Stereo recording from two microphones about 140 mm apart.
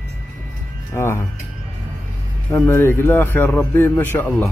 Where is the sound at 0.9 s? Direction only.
20° left (ahead or behind).